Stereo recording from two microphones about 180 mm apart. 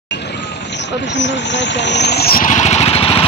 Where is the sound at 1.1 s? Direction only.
80° left; by 3.2 s 30° left (ahead or behind).